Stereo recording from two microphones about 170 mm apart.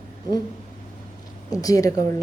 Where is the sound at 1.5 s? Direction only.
20° left (ahead or behind).